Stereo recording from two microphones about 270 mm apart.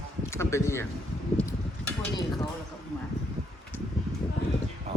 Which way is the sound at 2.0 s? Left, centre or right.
Centre.